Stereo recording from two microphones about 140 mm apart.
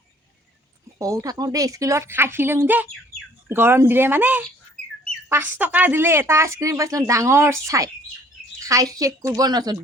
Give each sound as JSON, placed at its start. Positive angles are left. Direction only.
{"t": 0.9, "sound": "a woman's voice", "side_deg": -25}
{"t": 4.8, "sound": "bird", "side_deg": 10}
{"t": 5.3, "sound": "a woman's voice", "side_deg": -15}